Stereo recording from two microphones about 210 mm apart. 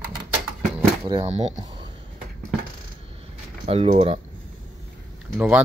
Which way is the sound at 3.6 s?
30° right (ahead or behind).